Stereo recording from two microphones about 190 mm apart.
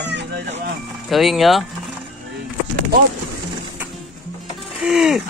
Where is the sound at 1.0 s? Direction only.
Centre (ahead or behind).